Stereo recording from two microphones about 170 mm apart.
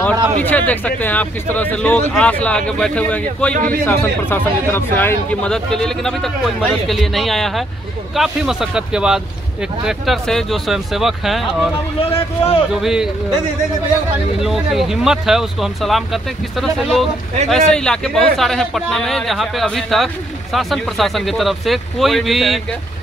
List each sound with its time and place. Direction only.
0.4 s speech: 10° left (ahead or behind)
3.5 s a man's voice: 55° right (ahead or behind)
3.8 s speech: 10° left (ahead or behind)
12.0 s speech: 35° left (ahead or behind)
12.7 s speech: 5° right (ahead or behind)
14.4 s speech: centre (ahead or behind)